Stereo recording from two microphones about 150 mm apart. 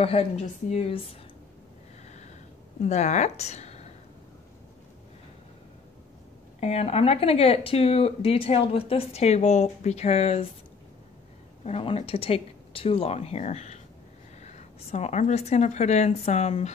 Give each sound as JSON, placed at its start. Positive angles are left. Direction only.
{"t": 0.0, "sound": "speech", "side_deg": 40}
{"t": 2.8, "sound": "a woman's voice", "side_deg": 50}
{"t": 6.6, "sound": "speech", "side_deg": 45}
{"t": 11.6, "sound": "a woman's voice", "side_deg": 40}